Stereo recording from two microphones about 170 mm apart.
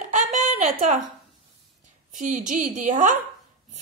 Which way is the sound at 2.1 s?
45° right (ahead or behind).